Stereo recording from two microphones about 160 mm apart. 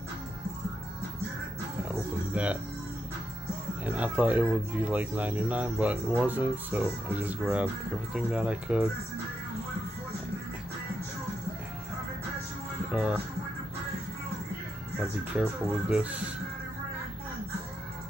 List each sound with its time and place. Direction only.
2.3 s speech: 10° right (ahead or behind)
3.8 s speech: 10° right (ahead or behind)
12.9 s speech: 5° right (ahead or behind)
15.3 s speech: 10° right (ahead or behind)